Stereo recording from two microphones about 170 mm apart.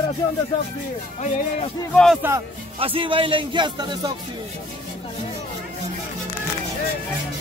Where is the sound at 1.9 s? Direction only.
Centre (ahead or behind).